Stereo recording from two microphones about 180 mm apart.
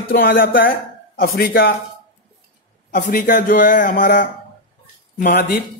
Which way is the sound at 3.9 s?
75° left (ahead or behind).